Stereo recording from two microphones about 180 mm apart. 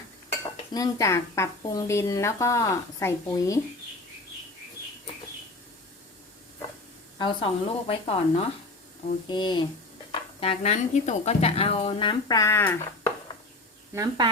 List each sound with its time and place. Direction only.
0.7 s a woman's voice: 20° left (ahead or behind)
7.2 s speech: 30° left (ahead or behind); by 12.8 s 15° left (ahead or behind)
13.9 s speech: 20° right (ahead or behind)